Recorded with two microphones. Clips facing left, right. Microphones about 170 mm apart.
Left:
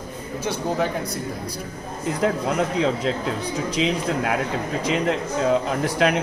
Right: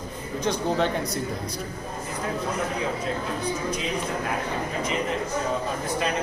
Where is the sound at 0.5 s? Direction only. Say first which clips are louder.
Even; 5° left (ahead or behind).